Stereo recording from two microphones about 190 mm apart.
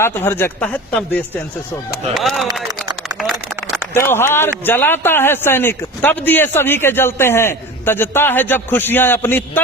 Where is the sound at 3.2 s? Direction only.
Centre (ahead or behind).